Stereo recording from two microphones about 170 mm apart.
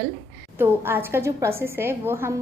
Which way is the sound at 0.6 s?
15° right (ahead or behind).